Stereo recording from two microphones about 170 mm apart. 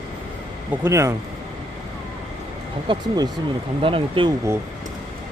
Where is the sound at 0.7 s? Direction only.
15° right (ahead or behind).